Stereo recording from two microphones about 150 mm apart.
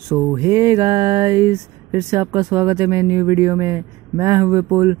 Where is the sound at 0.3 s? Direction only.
20° right (ahead or behind).